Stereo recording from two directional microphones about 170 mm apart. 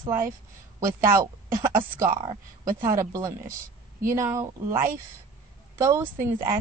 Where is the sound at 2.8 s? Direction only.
15° right (ahead or behind).